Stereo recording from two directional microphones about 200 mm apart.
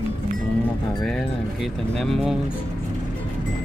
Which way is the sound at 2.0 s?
Centre (ahead or behind).